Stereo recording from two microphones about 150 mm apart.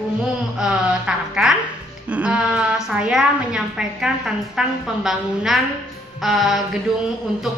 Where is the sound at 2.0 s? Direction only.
10° right (ahead or behind).